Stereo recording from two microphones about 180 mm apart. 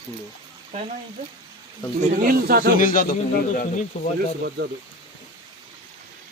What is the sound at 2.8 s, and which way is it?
Speech, 50° left (ahead or behind).